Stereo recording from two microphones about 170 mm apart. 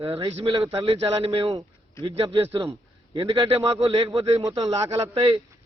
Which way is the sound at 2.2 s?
15° right (ahead or behind).